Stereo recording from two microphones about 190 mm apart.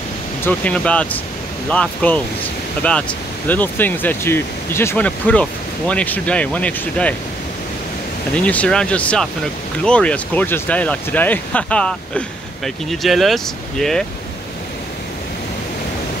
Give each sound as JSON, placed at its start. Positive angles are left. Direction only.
{"t": 0.5, "sound": "speech", "side_deg": 5}
{"t": 8.4, "sound": "speech", "side_deg": 5}